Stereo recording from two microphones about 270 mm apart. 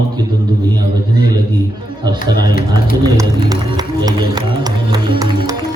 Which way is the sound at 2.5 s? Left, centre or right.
Left.